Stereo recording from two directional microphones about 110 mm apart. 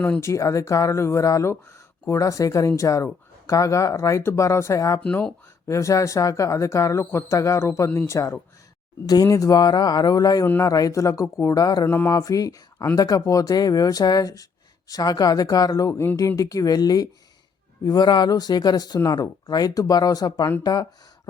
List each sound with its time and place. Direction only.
0.2 s speech: 30° left (ahead or behind)
5.0 s speech: 10° left (ahead or behind)
5.6 s speech: 30° left (ahead or behind)
10.4 s speech: 20° left (ahead or behind)
10.7 s speech: 30° left (ahead or behind)
11.9 s speech: 20° left (ahead or behind)
12.1 s speech: 30° left (ahead or behind)